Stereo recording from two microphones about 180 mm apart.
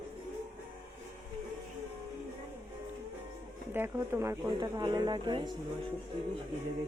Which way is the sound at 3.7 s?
10° right (ahead or behind).